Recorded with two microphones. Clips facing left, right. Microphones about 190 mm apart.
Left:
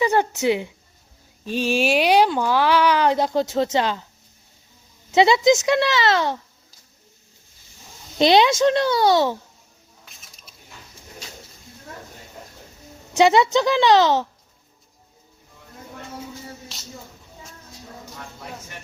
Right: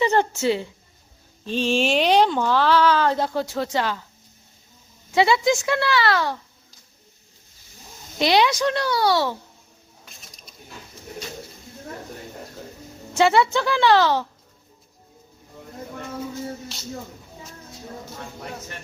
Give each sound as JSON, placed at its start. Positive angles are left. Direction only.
{"t": 0.0, "sound": "a woman's voice", "side_deg": 10}
{"t": 5.1, "sound": "a woman's voice", "side_deg": 20}
{"t": 8.2, "sound": "a woman's voice", "side_deg": 25}
{"t": 13.1, "sound": "a woman's voice", "side_deg": 20}